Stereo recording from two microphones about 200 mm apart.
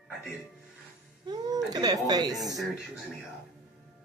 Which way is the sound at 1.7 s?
20° right (ahead or behind).